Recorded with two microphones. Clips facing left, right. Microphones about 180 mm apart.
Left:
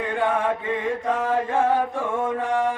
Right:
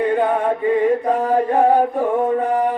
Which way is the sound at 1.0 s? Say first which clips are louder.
Right 6 dB; 40° right (ahead or behind).